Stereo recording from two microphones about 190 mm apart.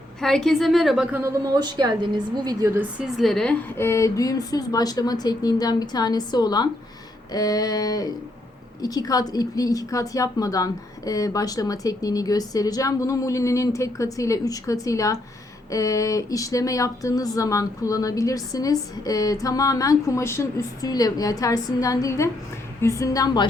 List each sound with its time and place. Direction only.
0.2 s a woman's voice: centre (ahead or behind); by 23.5 s 20° left (ahead or behind)